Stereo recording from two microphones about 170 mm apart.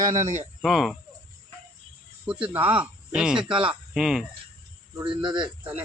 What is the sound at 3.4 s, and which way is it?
Speech, 30° right (ahead or behind).